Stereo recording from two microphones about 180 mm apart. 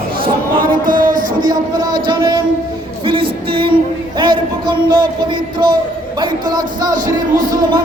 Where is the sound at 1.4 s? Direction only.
20° right (ahead or behind).